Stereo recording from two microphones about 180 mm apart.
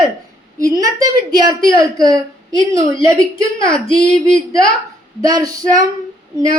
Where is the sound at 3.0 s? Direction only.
20° right (ahead or behind).